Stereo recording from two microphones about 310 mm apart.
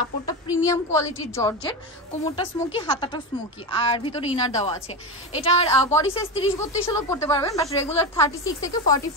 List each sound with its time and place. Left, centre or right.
0.7 s speech: centre